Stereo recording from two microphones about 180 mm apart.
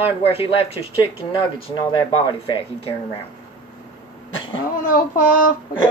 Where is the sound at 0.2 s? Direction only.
30° left (ahead or behind).